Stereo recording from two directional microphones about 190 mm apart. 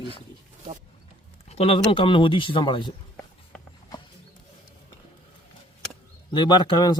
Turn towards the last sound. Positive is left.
turn(degrees=20)  # may be behind; listen again after turning